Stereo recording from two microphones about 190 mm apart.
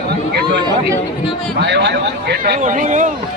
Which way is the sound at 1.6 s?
65° right (ahead or behind).